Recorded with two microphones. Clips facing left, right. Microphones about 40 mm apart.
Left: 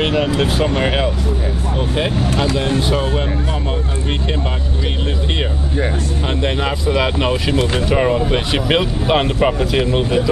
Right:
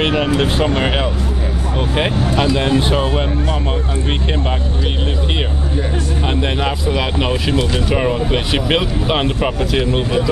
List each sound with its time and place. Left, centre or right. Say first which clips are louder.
0.0 s vehicle: even; centre
0.4 s speech: right 1 dB; centre
2.5 s speech: right 3 dB; right
2.9 s speech: right 1 dB; right
6.4 s speech: even; centre